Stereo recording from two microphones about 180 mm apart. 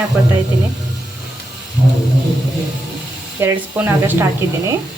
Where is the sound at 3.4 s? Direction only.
10° right (ahead or behind).